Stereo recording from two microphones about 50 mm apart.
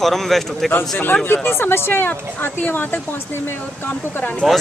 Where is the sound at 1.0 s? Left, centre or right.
Left.